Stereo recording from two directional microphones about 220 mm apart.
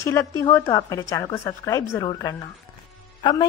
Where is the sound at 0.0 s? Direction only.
10° left (ahead or behind).